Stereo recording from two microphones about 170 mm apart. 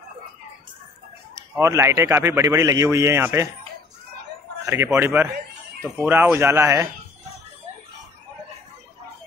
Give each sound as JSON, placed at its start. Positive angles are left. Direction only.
{"t": 1.3, "sound": "speech", "side_deg": -15}
{"t": 4.6, "sound": "speech", "side_deg": -15}